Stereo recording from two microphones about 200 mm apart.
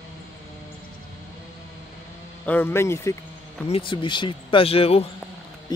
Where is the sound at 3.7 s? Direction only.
25° left (ahead or behind).